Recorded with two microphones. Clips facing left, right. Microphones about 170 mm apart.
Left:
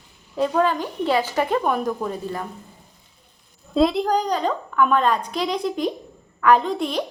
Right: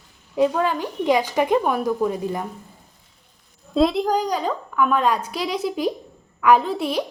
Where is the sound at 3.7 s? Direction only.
Centre (ahead or behind).